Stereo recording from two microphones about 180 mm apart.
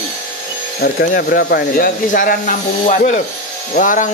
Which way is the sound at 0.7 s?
55° left (ahead or behind).